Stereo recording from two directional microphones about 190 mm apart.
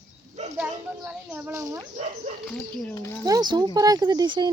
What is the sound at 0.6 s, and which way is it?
Speech, 10° right (ahead or behind).